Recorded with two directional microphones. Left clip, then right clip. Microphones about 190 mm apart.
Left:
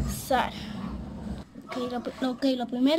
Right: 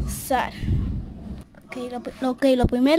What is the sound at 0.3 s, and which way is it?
Speech, 25° right (ahead or behind).